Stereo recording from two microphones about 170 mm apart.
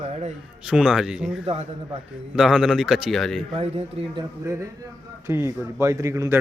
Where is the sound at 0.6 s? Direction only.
5° right (ahead or behind).